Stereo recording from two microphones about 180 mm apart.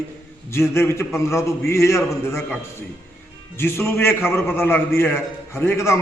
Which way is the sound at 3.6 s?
15° left (ahead or behind).